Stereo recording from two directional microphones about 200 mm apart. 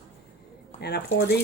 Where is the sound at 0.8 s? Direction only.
55° left (ahead or behind).